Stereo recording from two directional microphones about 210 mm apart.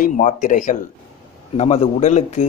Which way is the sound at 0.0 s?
35° left (ahead or behind).